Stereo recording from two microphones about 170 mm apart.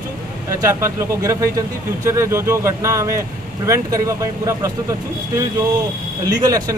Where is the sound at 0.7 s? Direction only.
15° right (ahead or behind).